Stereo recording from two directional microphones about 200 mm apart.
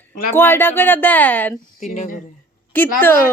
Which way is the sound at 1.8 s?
40° left (ahead or behind).